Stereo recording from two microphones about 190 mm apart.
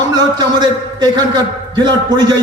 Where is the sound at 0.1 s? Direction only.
20° right (ahead or behind).